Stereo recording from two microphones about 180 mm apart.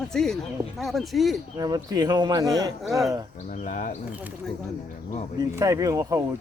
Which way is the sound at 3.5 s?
50° left (ahead or behind).